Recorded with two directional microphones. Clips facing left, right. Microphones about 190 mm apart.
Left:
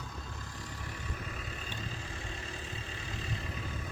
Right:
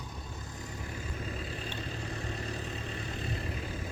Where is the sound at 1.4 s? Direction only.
35° right (ahead or behind).